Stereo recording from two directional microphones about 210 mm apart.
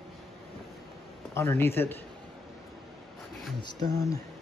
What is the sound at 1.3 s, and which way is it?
Speech, 10° left (ahead or behind).